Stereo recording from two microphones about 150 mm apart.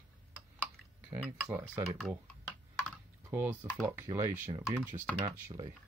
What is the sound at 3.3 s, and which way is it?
Speech, 15° right (ahead or behind).